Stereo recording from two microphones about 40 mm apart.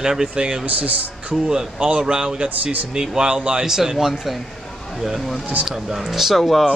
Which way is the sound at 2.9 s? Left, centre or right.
Centre.